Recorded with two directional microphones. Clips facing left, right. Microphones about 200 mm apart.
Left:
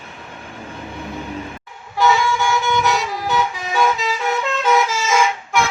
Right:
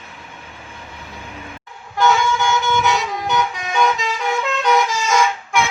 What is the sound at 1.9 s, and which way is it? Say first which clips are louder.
Vehicle: even; centre (ahead or behind).